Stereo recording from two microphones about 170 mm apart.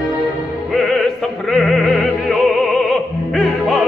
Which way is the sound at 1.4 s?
Centre (ahead or behind).